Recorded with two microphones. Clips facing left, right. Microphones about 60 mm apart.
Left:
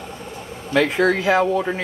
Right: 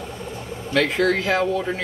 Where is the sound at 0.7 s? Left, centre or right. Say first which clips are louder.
Left 2 dB; centre.